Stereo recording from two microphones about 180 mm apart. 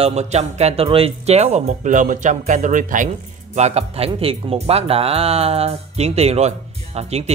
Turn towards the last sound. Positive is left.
turn(degrees=-35)  # may be behind; listen again after turning